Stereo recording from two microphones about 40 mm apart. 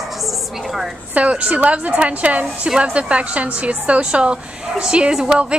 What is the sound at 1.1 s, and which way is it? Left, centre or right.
A woman's voice, right.